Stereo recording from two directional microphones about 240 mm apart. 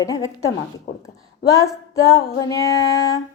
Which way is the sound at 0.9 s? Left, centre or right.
Left.